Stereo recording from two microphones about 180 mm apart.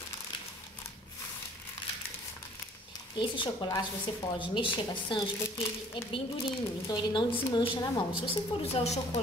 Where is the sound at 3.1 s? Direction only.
25° left (ahead or behind).